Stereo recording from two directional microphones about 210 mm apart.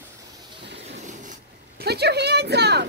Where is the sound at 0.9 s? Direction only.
35° right (ahead or behind).